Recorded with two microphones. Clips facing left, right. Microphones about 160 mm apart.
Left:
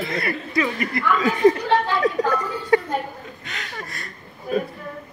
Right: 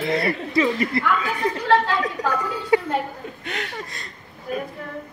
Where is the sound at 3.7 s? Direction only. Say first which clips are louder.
Even; 20° right (ahead or behind).